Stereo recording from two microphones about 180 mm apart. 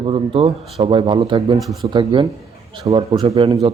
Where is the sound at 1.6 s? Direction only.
Centre (ahead or behind).